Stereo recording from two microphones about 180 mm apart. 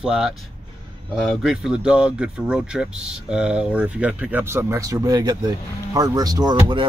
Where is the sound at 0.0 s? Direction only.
5° right (ahead or behind).